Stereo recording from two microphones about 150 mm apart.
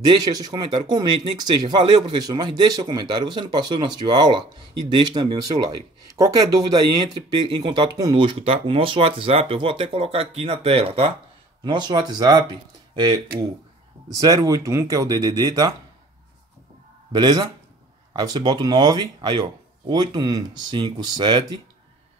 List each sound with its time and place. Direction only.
0.0 s speech: 30° right (ahead or behind)
11.6 s speech: 30° right (ahead or behind)
17.1 s speech: 30° right (ahead or behind)